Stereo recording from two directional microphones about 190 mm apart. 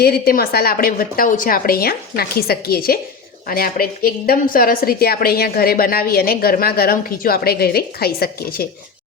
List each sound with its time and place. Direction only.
0.0 s a woman's voice: 55° left (ahead or behind)